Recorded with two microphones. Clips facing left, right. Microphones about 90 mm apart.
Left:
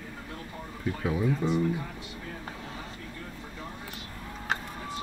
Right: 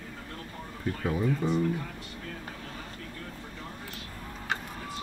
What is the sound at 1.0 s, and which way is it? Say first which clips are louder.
Speech: left 1 dB; 5° left (ahead or behind).